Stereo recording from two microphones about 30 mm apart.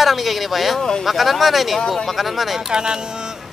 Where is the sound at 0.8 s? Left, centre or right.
Left.